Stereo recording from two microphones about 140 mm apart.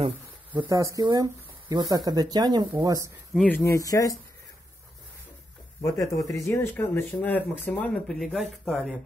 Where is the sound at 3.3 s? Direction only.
10° left (ahead or behind).